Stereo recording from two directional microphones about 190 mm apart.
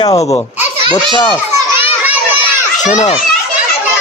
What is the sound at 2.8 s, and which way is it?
Speech, 40° left (ahead or behind).